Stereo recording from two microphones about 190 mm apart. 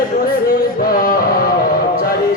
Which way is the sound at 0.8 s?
50° left (ahead or behind).